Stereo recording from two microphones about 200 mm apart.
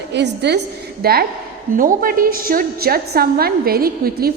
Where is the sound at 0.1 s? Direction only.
60° right (ahead or behind).